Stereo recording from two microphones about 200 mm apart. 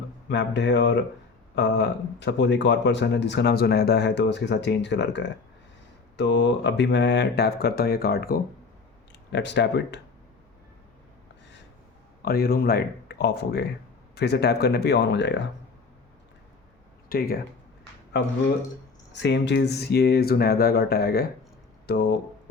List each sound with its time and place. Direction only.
0.3 s speech: 60° left (ahead or behind)
9.3 s speech: 60° left (ahead or behind)
12.2 s speech: 50° left (ahead or behind)
17.1 s speech: 45° left (ahead or behind)
19.1 s speech: 60° left (ahead or behind)